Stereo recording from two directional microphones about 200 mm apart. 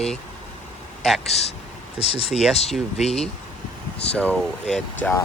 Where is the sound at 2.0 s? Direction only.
30° left (ahead or behind).